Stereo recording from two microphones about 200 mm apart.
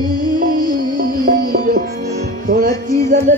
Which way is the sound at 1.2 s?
50° right (ahead or behind).